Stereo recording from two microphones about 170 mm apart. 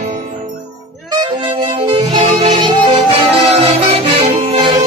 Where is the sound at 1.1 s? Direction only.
25° right (ahead or behind).